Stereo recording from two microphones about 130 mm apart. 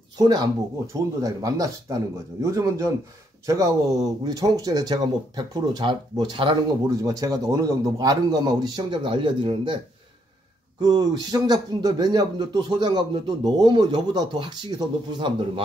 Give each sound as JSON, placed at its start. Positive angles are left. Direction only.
{"t": 0.2, "sound": "speech", "side_deg": -30}
{"t": 10.8, "sound": "speech", "side_deg": -30}